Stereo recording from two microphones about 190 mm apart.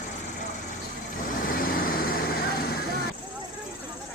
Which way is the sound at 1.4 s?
50° left (ahead or behind).